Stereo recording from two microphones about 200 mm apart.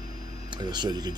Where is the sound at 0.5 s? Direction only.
20° right (ahead or behind).